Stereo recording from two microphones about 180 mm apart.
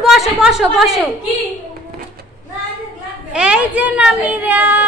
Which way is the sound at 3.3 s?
5° right (ahead or behind).